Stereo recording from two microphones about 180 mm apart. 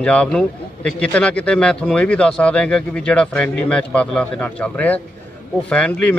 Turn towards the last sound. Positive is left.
turn(degrees=5)  # may be behind; listen again after turning